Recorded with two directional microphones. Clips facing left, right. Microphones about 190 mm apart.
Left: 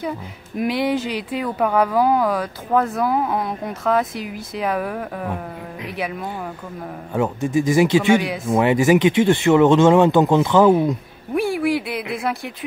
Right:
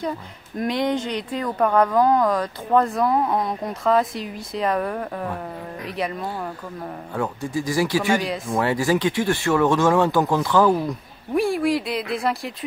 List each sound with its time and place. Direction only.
0.6 s speech: 5° left (ahead or behind)
7.2 s speech: 20° left (ahead or behind)
8.2 s speech: centre (ahead or behind)
8.5 s speech: 20° left (ahead or behind)
11.3 s speech: centre (ahead or behind)